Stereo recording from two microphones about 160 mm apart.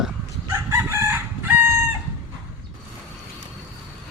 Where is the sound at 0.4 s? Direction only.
15° right (ahead or behind).